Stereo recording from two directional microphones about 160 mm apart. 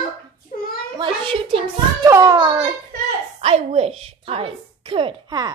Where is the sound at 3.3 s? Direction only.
35° right (ahead or behind).